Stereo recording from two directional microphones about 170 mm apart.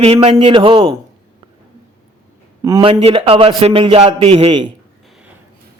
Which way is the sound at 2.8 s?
35° right (ahead or behind).